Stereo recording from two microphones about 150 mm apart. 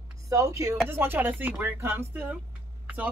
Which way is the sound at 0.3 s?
20° right (ahead or behind).